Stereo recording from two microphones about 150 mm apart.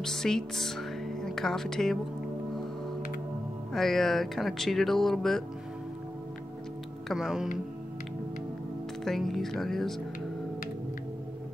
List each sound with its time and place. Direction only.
0.0 s speech: 5° left (ahead or behind)
3.7 s speech: centre (ahead or behind)
7.1 s speech: centre (ahead or behind)
9.0 s speech: centre (ahead or behind)